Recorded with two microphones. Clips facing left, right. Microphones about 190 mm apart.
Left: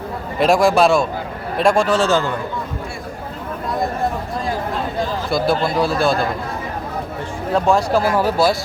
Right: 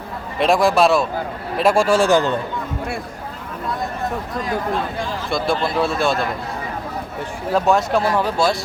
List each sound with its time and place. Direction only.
0.3 s speech: centre (ahead or behind)
5.3 s speech: centre (ahead or behind)
7.5 s speech: 5° right (ahead or behind)